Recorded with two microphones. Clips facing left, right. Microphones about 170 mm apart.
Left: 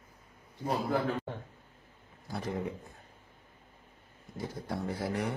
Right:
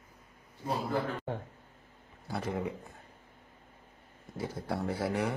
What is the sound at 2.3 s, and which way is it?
Speech, 70° right (ahead or behind).